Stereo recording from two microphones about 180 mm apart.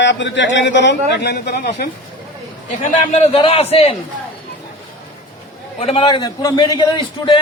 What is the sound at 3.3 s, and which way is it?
Speech, 30° left (ahead or behind).